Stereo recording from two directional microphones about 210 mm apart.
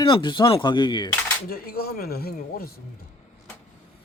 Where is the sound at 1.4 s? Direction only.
45° left (ahead or behind).